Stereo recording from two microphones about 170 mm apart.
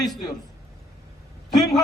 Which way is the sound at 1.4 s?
Centre (ahead or behind).